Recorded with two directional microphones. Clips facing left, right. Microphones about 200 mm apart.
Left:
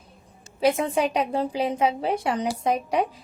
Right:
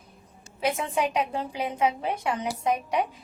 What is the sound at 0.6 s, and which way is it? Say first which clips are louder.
A woman's voice: left 5 dB; 35° left (ahead or behind).